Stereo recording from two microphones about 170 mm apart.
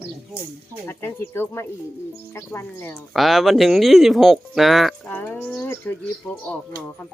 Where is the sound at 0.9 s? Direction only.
15° left (ahead or behind).